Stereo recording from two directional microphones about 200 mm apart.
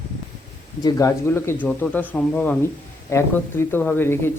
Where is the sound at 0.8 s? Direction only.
15° left (ahead or behind).